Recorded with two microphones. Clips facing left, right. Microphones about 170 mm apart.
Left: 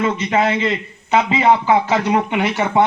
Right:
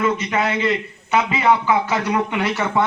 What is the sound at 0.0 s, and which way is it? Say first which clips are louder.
Speech: left 3 dB; 30° left (ahead or behind).